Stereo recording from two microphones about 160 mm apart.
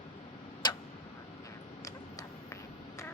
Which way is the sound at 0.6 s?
25° left (ahead or behind).